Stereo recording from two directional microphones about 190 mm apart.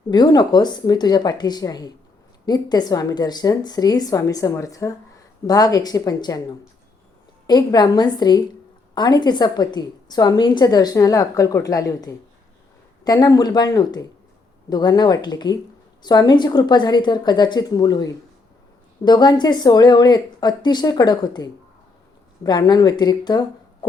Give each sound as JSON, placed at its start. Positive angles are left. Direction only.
{"t": 0.1, "sound": "a woman's voice", "side_deg": 20}